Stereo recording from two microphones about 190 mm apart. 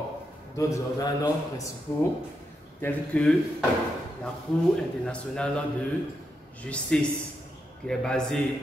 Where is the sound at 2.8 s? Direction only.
5° left (ahead or behind).